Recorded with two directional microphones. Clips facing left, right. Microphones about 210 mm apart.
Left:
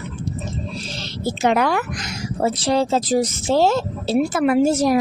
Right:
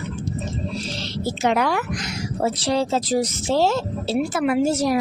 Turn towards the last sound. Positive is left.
turn(degrees=50)  # may be behind; listen again after turning